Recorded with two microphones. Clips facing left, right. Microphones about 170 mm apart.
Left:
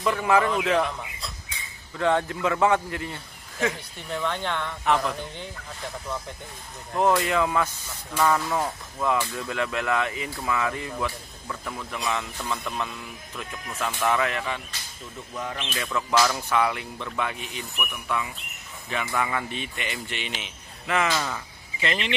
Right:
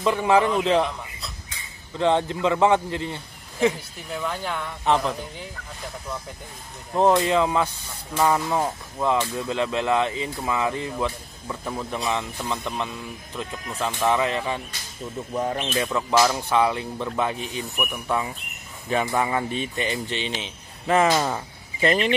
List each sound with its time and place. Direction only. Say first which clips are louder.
0.0 s speech: right 3 dB; 25° right (ahead or behind)
2.0 s speech: right 2 dB; 25° right (ahead or behind)
4.1 s speech: even; 5° right (ahead or behind)
4.8 s speech: right 2 dB; 30° right (ahead or behind)
7.0 s speech: right 3 dB; 25° right (ahead or behind)
15.3 s speech: right 7 dB; 40° right (ahead or behind)
15.7 s speech: right 2 dB; 25° right (ahead or behind); by 22.1 s 40° right (ahead or behind)